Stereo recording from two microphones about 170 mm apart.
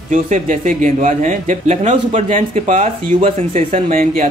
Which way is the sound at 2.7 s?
45° right (ahead or behind).